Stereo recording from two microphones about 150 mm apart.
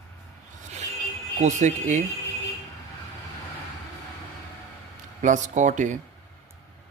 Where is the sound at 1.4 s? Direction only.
55° right (ahead or behind).